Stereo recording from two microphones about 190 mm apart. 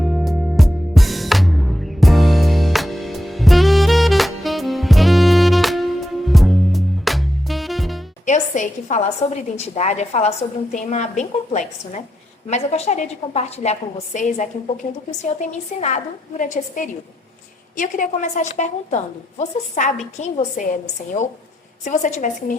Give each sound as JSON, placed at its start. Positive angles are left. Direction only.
{"t": 0.0, "sound": "music", "side_deg": 0}
{"t": 8.3, "sound": "a woman's voice", "side_deg": 40}
{"t": 21.8, "sound": "a woman's voice", "side_deg": 40}